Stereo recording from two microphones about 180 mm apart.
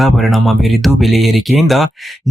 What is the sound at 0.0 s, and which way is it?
Speech, centre (ahead or behind).